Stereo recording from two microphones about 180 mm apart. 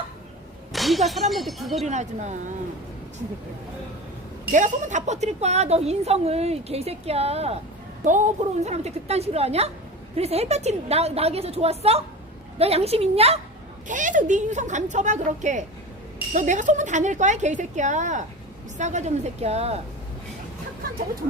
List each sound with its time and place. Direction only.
0.7 s speech: centre (ahead or behind)
1.9 s a woman's voice: 40° right (ahead or behind)
4.5 s a woman's voice: 40° right (ahead or behind)
13.8 s a woman's voice: 45° right (ahead or behind)